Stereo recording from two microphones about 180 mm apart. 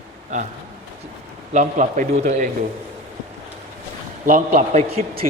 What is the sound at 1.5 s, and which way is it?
Mantra, 45° right (ahead or behind).